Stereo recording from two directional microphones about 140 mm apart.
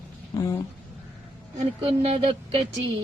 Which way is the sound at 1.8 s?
45° right (ahead or behind).